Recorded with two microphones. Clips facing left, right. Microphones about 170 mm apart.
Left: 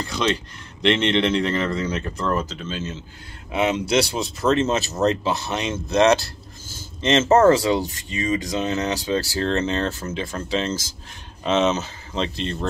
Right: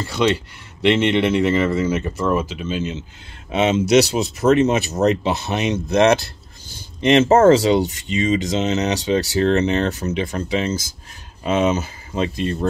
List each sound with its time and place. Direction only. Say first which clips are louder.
0.2 s speech: right 6 dB; 15° right (ahead or behind)
7.0 s speech: right 3 dB; 15° right (ahead or behind)